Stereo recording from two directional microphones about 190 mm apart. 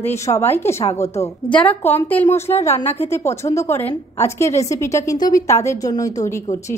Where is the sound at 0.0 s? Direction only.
15° left (ahead or behind).